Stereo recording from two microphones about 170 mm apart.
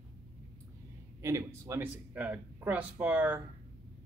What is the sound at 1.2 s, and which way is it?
Speech, 15° right (ahead or behind).